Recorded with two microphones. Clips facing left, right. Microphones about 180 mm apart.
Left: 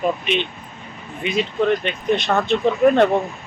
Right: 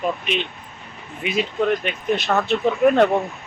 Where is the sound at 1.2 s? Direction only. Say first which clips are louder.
Left 2 dB; 5° right (ahead or behind).